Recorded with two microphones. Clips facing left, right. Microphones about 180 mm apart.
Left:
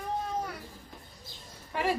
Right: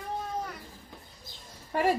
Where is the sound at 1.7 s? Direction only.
45° right (ahead or behind).